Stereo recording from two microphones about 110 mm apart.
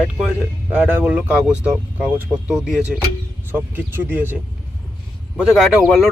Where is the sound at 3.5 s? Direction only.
20° right (ahead or behind).